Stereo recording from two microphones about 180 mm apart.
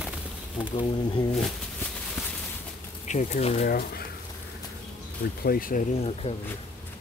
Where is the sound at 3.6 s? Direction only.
60° left (ahead or behind).